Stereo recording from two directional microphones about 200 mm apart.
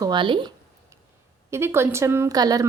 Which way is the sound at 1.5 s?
10° right (ahead or behind).